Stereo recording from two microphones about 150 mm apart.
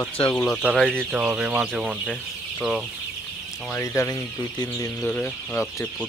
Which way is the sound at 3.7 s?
20° left (ahead or behind).